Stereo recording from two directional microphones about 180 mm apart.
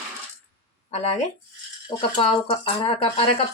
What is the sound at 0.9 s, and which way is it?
Speech, 35° left (ahead or behind).